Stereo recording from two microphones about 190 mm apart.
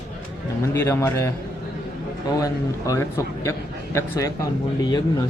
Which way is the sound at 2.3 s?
15° left (ahead or behind).